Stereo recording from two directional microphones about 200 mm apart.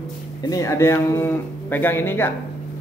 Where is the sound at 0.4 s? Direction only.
15° left (ahead or behind).